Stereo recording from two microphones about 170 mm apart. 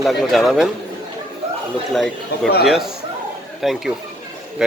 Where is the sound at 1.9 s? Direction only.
Centre (ahead or behind).